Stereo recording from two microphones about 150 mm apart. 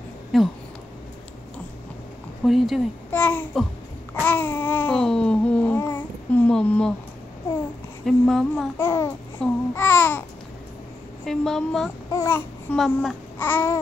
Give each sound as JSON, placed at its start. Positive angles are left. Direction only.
{"t": 0.3, "sound": "a woman's voice", "side_deg": 0}
{"t": 2.4, "sound": "a woman's voice", "side_deg": 0}
{"t": 3.1, "sound": "babbling", "side_deg": 10}
{"t": 8.0, "sound": "a woman's voice", "side_deg": 0}
{"t": 8.7, "sound": "babbling", "side_deg": 15}
{"t": 9.4, "sound": "a woman's voice", "side_deg": 5}
{"t": 9.8, "sound": "babbling", "side_deg": 10}
{"t": 11.2, "sound": "a woman's voice", "side_deg": 0}
{"t": 12.1, "sound": "babbling", "side_deg": 20}
{"t": 12.7, "sound": "a woman's voice", "side_deg": 0}
{"t": 13.4, "sound": "babbling", "side_deg": 15}